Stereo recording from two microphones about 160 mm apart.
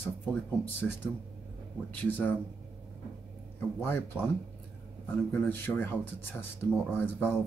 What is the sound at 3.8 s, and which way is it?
Speech, 10° left (ahead or behind).